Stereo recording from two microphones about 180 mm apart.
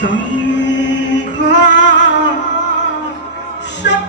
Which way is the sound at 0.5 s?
85° left.